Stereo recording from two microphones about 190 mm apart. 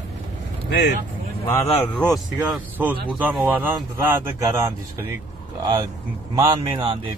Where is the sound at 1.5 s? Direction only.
10° left (ahead or behind); by 7.1 s 25° right (ahead or behind).